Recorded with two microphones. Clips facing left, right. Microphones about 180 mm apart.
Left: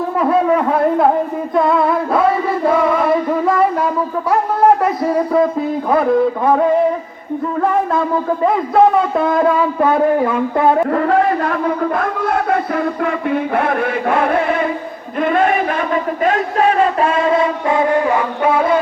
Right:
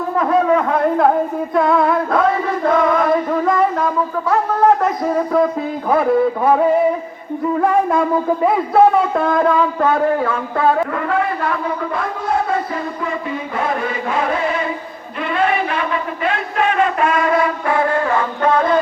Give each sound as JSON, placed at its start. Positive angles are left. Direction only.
{"t": 1.5, "sound": "a man's voice", "side_deg": 0}
{"t": 2.6, "sound": "music", "side_deg": 10}
{"t": 5.9, "sound": "a man's voice", "side_deg": -5}
{"t": 8.4, "sound": "a man's voice", "side_deg": -5}
{"t": 9.5, "sound": "speech", "side_deg": 10}
{"t": 10.9, "sound": "a sound", "side_deg": 40}
{"t": 15.2, "sound": "speech", "side_deg": 45}